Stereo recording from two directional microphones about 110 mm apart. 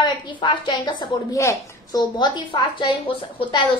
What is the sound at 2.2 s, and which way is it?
A woman's voice, 45° left (ahead or behind).